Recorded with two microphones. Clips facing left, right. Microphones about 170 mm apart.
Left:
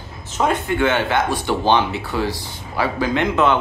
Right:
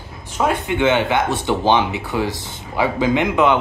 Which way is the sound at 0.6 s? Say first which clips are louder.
Right 2 dB; 20° right (ahead or behind).